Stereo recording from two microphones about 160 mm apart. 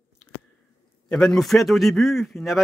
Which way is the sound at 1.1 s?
5° left (ahead or behind).